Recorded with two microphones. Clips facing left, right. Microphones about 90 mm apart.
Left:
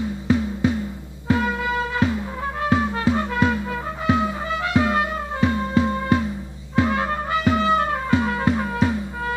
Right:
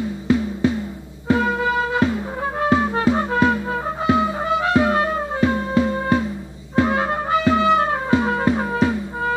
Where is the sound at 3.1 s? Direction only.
30° right (ahead or behind).